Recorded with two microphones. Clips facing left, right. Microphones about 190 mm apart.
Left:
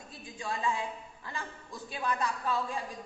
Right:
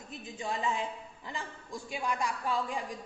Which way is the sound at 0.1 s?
20° right (ahead or behind).